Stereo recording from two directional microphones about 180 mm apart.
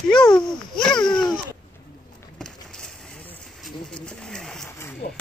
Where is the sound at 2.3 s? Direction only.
5° left (ahead or behind).